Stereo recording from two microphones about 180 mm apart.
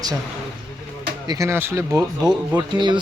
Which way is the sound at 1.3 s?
15° right (ahead or behind).